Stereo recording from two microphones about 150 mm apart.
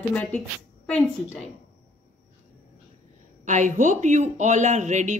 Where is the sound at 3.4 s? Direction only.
55° right (ahead or behind).